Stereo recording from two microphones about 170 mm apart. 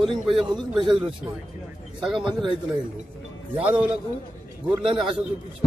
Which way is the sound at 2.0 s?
Centre (ahead or behind).